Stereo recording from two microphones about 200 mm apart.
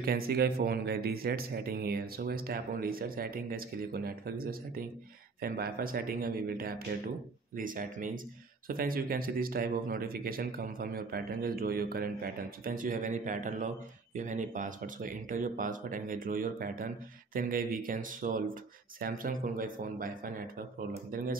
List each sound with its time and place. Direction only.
0.0 s speech: 50° right (ahead or behind)